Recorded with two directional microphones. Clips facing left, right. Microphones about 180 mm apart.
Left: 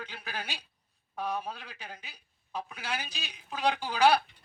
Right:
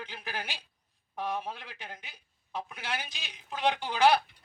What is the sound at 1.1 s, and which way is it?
Speech, 20° right (ahead or behind).